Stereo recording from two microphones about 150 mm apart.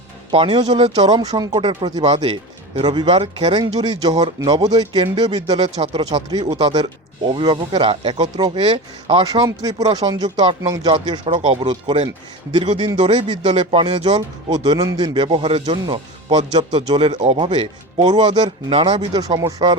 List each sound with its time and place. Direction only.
0.3 s speech: 35° right (ahead or behind)
1.0 s speech: 25° right (ahead or behind)
2.0 s speech: 40° right (ahead or behind)
6.0 s speech: 25° right (ahead or behind)
8.7 s speech: 40° right (ahead or behind)
9.6 s speech: 25° right (ahead or behind)